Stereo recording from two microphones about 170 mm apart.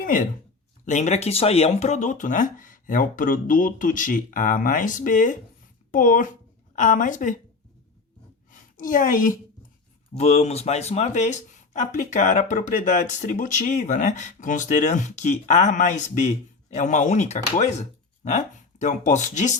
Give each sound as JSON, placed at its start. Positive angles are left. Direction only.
{"t": 0.0, "sound": "speech", "side_deg": 55}
{"t": 8.4, "sound": "a sound", "side_deg": 50}
{"t": 10.2, "sound": "speech", "side_deg": 40}